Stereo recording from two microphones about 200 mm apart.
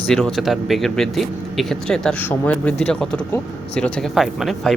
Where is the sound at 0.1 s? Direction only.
Centre (ahead or behind).